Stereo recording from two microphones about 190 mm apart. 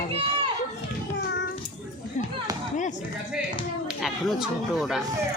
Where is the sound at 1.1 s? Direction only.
65° left (ahead or behind).